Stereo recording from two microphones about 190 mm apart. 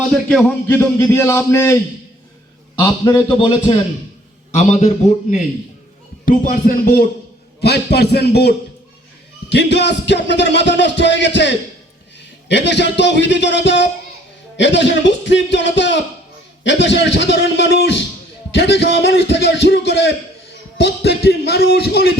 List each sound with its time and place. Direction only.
0.3 s a man's voice: 5° left (ahead or behind)
2.8 s a man's voice: 20° left (ahead or behind)
6.2 s speech: 50° left (ahead or behind)
9.5 s music: 65° left (ahead or behind)
18.5 s speech: 65° left (ahead or behind)